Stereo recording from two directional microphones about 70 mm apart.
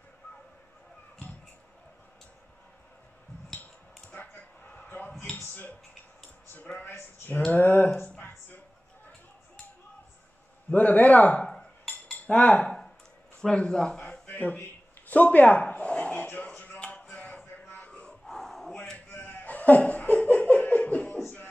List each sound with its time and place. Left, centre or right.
4.1 s a sound: centre
10.7 s a man's voice: left
11.4 s cutlery: centre
11.9 s cutlery: left
12.6 s a sound: centre
13.4 s speech: centre
15.0 s a sound: left
18.2 s battle cry: centre
19.1 s laughter: left